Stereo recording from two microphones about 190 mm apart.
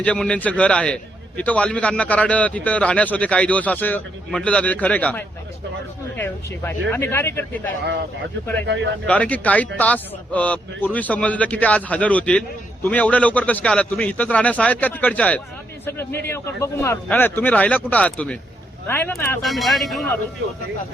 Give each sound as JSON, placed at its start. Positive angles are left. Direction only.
{"t": 0.0, "sound": "a man's voice", "side_deg": 5}
{"t": 8.6, "sound": "speech", "side_deg": -70}
{"t": 9.0, "sound": "a man's voice", "side_deg": 5}
{"t": 19.4, "sound": "a man's voice", "side_deg": 0}